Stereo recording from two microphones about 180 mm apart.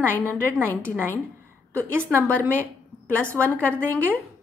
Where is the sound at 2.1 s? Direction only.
15° right (ahead or behind).